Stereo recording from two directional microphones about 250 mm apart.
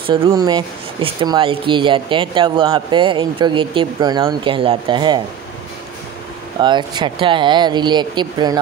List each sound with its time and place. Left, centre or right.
0.0 s speech: right
6.6 s speech: centre